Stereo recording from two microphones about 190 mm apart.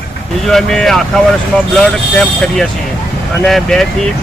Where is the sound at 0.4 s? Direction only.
Centre (ahead or behind).